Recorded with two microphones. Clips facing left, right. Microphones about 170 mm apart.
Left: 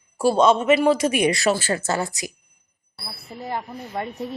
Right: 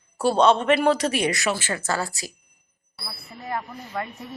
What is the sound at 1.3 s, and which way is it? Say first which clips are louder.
Speech: left 5 dB; 35° left (ahead or behind).